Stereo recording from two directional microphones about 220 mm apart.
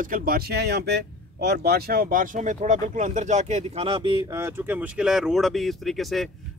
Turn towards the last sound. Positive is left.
turn(degrees=0)  # may be behind; listen again after turning